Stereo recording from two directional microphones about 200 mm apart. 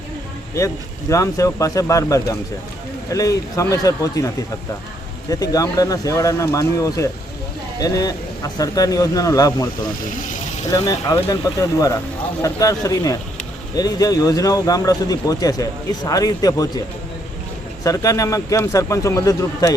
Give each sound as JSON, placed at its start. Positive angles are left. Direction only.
{"t": 1.1, "sound": "speech", "side_deg": 15}
{"t": 5.3, "sound": "speech", "side_deg": 15}
{"t": 10.7, "sound": "speech", "side_deg": 15}
{"t": 12.4, "sound": "speech", "side_deg": 15}
{"t": 17.8, "sound": "speech", "side_deg": 15}